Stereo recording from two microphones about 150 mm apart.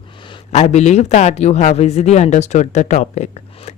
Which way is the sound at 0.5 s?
45° left (ahead or behind).